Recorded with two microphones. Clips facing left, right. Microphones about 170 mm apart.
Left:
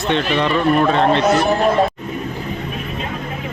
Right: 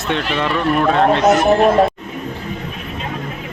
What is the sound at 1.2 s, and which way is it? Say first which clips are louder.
Speech: right 2 dB; 20° right (ahead or behind).